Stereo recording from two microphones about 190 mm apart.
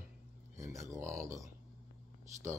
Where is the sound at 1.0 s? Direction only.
15° right (ahead or behind).